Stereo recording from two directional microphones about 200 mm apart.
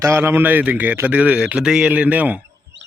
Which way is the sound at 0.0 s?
15° right (ahead or behind).